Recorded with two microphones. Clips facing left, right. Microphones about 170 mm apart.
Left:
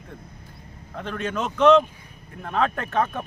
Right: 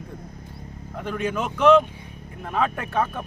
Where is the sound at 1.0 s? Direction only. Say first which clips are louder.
Right 1 dB; 10° right (ahead or behind).